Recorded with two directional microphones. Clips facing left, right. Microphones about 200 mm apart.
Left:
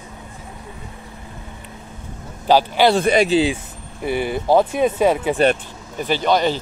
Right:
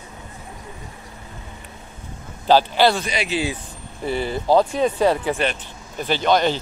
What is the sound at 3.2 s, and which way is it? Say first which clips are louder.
Speech: left 7 dB; 25° left (ahead or behind).